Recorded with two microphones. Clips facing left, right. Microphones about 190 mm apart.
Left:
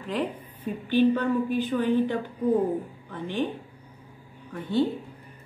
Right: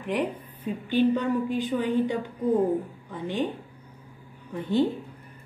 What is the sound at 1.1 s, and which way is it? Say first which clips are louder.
Speech: left 1 dB; 15° right (ahead or behind).